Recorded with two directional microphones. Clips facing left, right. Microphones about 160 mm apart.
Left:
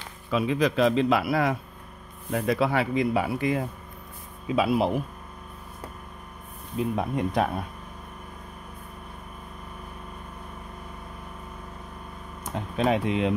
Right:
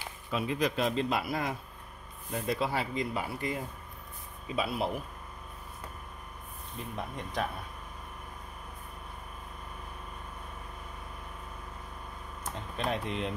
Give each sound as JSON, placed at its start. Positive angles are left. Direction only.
{"t": 0.3, "sound": "speech", "side_deg": 90}
{"t": 4.6, "sound": "speech", "side_deg": 90}
{"t": 6.8, "sound": "speech", "side_deg": 75}
{"t": 12.7, "sound": "speech", "side_deg": 90}